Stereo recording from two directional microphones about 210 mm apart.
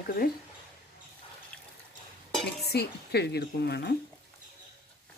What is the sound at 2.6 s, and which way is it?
Speech, 50° left (ahead or behind).